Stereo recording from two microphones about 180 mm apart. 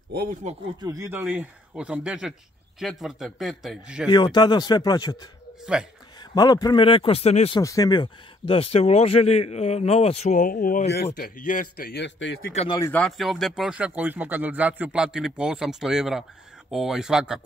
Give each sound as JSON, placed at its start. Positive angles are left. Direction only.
{"t": 0.3, "sound": "speech", "side_deg": -40}
{"t": 0.7, "sound": "speech", "side_deg": -20}
{"t": 4.1, "sound": "speech", "side_deg": 25}
{"t": 6.3, "sound": "speech", "side_deg": 20}
{"t": 7.5, "sound": "speech", "side_deg": 20}
{"t": 10.4, "sound": "a man's voice", "side_deg": 50}
{"t": 12.5, "sound": "speech", "side_deg": 25}
{"t": 12.9, "sound": "speech", "side_deg": 0}